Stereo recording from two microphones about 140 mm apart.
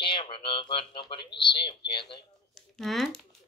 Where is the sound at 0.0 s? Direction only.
40° left (ahead or behind).